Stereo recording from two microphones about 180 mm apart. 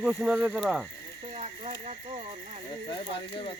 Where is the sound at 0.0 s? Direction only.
5° right (ahead or behind).